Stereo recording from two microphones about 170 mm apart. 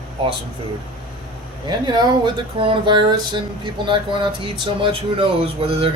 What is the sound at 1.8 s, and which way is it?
Speech, 30° right (ahead or behind).